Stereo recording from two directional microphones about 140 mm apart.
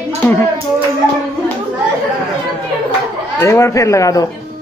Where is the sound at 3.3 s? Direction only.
20° left (ahead or behind).